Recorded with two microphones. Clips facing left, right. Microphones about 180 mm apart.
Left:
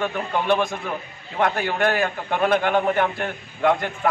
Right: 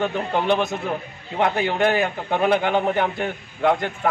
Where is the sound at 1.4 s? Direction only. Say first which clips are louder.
Right 1 dB; 15° right (ahead or behind).